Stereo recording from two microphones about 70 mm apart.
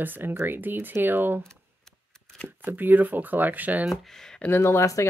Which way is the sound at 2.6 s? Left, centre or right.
Right.